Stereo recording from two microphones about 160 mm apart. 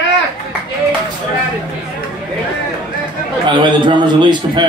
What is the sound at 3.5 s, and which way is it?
A man's voice, 30° right (ahead or behind).